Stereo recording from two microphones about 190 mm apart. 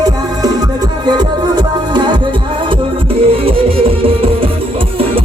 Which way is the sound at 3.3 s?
30° right (ahead or behind).